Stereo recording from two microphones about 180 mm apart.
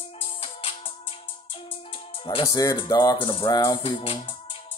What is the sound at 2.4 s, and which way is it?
Speech, 20° left (ahead or behind).